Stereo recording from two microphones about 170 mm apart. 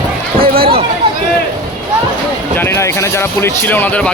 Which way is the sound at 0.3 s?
60° right (ahead or behind).